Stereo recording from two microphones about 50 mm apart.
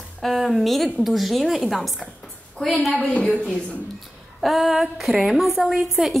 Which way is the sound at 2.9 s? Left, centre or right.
Left.